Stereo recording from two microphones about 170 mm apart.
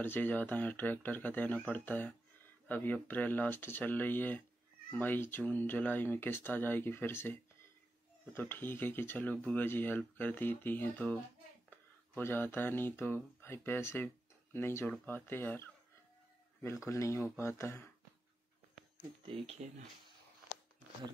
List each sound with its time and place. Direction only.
0.0 s speech: 10° left (ahead or behind)
8.4 s speech: 10° left (ahead or behind)
12.2 s speech: 15° left (ahead or behind)
16.8 s speech: 20° left (ahead or behind)
19.2 s speech: 35° right (ahead or behind)